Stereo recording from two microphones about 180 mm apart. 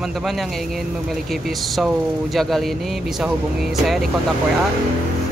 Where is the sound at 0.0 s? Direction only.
Centre (ahead or behind).